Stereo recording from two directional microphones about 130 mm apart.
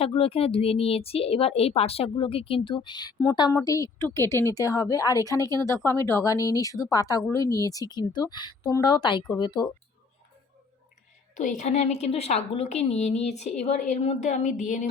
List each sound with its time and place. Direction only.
0.0 s a woman's voice: 50° left (ahead or behind)
11.3 s a woman's voice: 65° left (ahead or behind)